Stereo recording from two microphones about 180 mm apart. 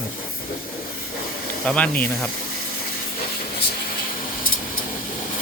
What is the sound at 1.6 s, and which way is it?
Speech, 5° left (ahead or behind).